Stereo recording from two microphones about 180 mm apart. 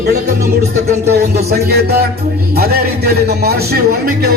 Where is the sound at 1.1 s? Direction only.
65° right (ahead or behind).